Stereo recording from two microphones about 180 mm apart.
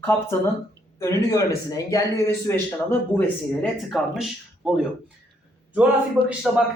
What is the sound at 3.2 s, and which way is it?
Speech, 5° left (ahead or behind).